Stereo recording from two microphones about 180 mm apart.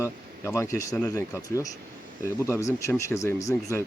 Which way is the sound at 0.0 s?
15° left (ahead or behind).